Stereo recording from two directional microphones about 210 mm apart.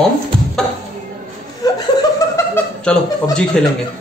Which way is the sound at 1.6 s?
20° left (ahead or behind).